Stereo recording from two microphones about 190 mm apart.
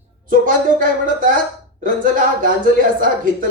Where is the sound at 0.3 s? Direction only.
45° right (ahead or behind).